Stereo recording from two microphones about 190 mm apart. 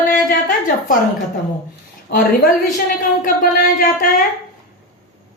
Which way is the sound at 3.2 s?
45° left (ahead or behind).